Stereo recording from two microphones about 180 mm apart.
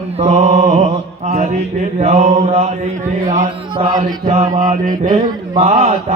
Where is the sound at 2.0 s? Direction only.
40° right (ahead or behind).